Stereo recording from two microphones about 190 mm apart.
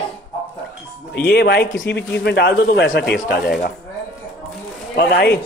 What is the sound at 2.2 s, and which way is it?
Speech, 65° left (ahead or behind).